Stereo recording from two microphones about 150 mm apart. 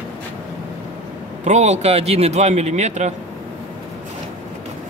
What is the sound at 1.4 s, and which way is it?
Speech, 50° right (ahead or behind).